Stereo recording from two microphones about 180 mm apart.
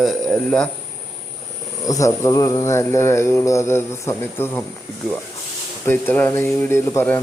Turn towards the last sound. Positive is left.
turn(degrees=10)  # may be behind; listen again after turning